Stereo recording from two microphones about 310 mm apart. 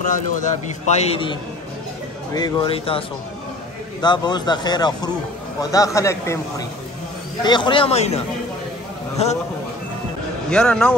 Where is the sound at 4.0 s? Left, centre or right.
Centre.